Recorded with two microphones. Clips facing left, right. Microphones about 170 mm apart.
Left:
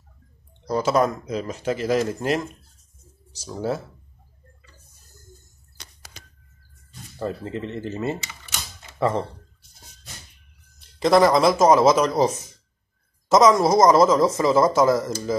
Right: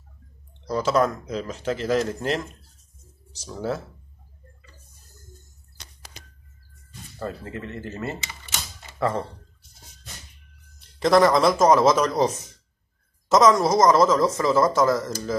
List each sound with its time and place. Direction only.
0.7 s a woman's voice: 10° left (ahead or behind)
3.5 s a woman's voice: 15° left (ahead or behind)
7.2 s speech: 20° left (ahead or behind)
11.0 s speech: 5° left (ahead or behind)
13.3 s a woman's voice: 5° left (ahead or behind)